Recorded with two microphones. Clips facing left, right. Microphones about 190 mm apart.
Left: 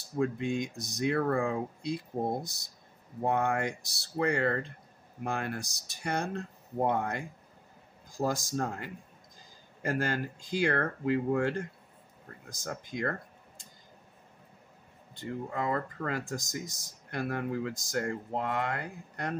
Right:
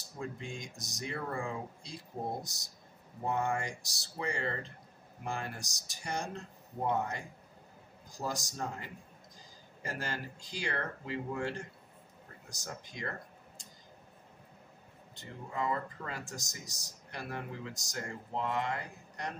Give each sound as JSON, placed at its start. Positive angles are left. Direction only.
{"t": 0.2, "sound": "speech", "side_deg": 60}
{"t": 15.5, "sound": "speech", "side_deg": 55}